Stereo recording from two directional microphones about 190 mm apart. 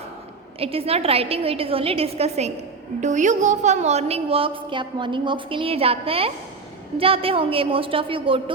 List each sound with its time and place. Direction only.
0.6 s a woman's voice: 30° right (ahead or behind)